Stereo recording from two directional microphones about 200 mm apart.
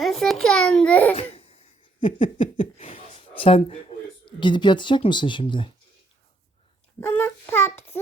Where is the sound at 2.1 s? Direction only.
40° left (ahead or behind).